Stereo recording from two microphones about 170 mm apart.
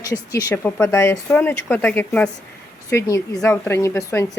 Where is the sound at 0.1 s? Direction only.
20° left (ahead or behind).